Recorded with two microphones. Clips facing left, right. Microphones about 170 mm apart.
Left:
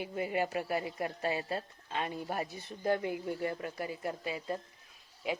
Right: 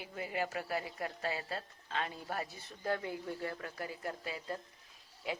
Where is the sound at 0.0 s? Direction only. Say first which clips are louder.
Left 5 dB; 20° left (ahead or behind).